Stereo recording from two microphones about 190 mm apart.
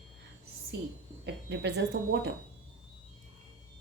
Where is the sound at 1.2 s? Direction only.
60° right (ahead or behind).